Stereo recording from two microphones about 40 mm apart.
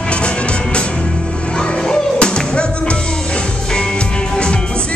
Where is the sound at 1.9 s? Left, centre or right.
Left.